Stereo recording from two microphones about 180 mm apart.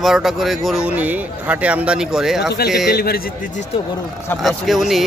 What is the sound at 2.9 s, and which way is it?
Speech, 60° left (ahead or behind).